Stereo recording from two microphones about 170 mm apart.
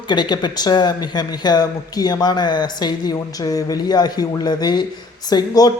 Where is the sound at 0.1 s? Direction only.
25° left (ahead or behind).